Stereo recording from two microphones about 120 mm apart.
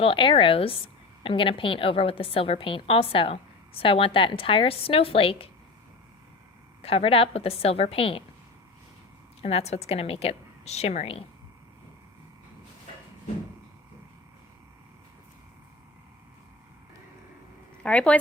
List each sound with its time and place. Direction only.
0.0 s a woman's voice: 45° left (ahead or behind)
6.8 s a woman's voice: 50° left (ahead or behind)
9.4 s a woman's voice: 60° left (ahead or behind)
17.8 s speech: 10° left (ahead or behind)